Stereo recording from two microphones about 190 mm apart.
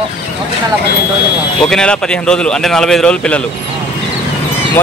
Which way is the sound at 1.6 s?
5° left (ahead or behind).